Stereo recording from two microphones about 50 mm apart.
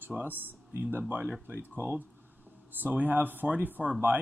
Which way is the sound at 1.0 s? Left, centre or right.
Right.